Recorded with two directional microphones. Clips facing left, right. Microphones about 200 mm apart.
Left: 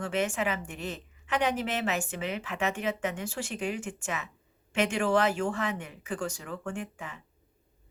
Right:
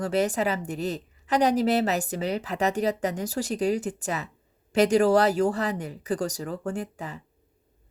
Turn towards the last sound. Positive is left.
turn(degrees=-35)  # may be behind; listen again after turning